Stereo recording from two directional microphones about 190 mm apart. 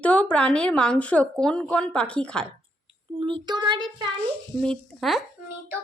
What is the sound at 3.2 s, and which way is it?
Child singing, 25° right (ahead or behind).